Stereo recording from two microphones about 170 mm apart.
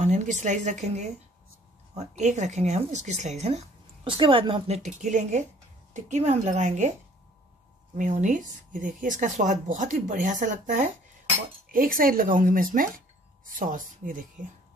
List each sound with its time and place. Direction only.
0.0 s speech: 45° right (ahead or behind)
8.0 s speech: 45° right (ahead or behind)